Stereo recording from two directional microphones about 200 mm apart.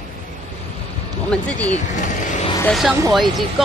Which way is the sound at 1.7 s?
40° left (ahead or behind).